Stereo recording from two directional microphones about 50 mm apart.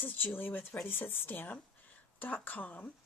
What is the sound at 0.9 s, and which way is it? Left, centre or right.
Speech, left.